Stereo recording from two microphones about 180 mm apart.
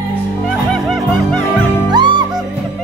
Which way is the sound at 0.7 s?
Centre (ahead or behind).